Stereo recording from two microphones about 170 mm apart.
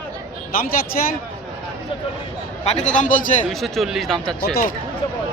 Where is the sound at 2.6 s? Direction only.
40° left (ahead or behind).